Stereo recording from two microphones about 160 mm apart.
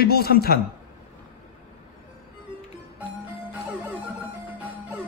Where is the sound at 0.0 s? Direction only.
75° left (ahead or behind).